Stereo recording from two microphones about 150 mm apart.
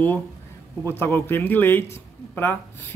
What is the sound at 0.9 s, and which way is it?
Speech, 15° left (ahead or behind).